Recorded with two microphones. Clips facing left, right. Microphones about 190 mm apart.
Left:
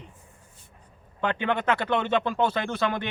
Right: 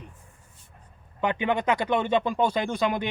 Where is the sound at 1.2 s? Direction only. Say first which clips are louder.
Right 1 dB; 10° right (ahead or behind).